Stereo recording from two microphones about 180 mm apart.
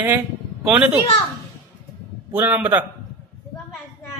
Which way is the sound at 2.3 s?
10° right (ahead or behind).